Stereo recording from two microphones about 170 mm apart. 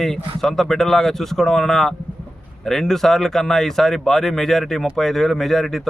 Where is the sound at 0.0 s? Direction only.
Centre (ahead or behind).